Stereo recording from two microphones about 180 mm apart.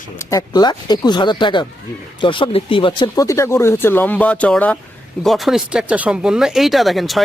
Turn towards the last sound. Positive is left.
turn(degrees=0)  # may be behind; listen again after turning